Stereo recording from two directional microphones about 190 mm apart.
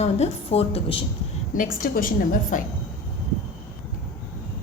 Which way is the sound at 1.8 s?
45° left (ahead or behind).